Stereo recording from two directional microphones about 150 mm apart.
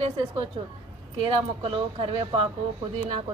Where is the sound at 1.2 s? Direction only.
35° right (ahead or behind).